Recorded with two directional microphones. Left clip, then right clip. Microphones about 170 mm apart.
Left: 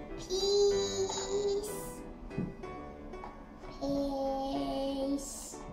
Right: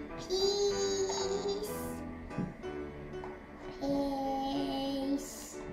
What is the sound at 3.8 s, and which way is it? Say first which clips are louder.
Music: even; 15° right (ahead or behind).